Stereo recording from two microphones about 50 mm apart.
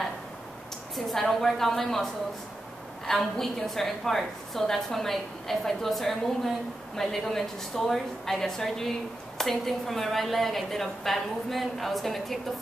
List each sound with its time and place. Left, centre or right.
0.9 s a woman's voice: centre
3.1 s a woman's voice: centre